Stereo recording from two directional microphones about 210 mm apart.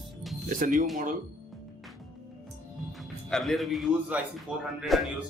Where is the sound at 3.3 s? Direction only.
Centre (ahead or behind).